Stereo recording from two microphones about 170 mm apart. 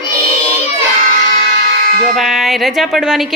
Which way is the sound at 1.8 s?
55° right (ahead or behind).